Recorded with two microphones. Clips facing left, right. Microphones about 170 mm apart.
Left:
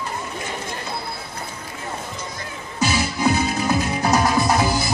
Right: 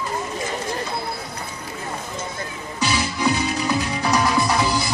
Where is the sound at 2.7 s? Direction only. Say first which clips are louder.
Left 2 dB; 50° left (ahead or behind).